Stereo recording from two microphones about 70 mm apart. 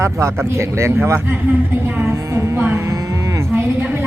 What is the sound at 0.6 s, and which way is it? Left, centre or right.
Speech, right.